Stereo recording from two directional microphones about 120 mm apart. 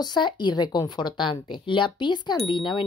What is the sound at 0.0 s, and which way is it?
Speech, 35° left (ahead or behind).